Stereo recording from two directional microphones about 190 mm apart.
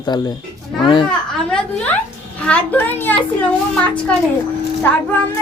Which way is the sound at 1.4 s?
5° left (ahead or behind).